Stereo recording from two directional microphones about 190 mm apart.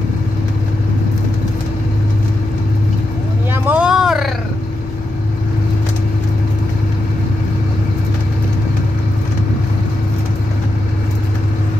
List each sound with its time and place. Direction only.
3.5 s vehicle: 10° right (ahead or behind)